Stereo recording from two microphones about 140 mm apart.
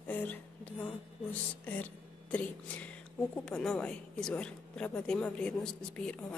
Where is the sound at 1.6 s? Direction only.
10° left (ahead or behind).